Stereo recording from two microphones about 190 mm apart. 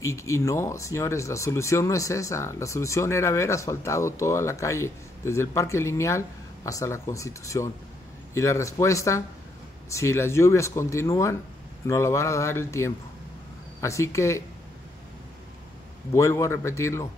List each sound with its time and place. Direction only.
0.0 s speech: 15° left (ahead or behind)
16.1 s speech: 15° left (ahead or behind)